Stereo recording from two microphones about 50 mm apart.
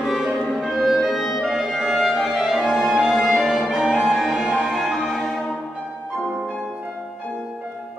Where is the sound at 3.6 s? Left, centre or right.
Centre.